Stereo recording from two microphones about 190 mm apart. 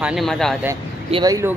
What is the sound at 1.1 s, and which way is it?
Speech, 20° right (ahead or behind).